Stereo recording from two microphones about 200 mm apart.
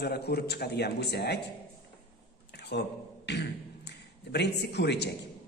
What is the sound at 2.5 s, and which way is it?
A man's voice, 60° left (ahead or behind).